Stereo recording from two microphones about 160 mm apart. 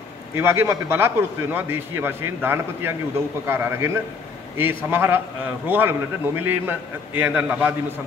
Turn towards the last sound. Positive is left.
turn(degrees=-10)  # may be behind; listen again after turning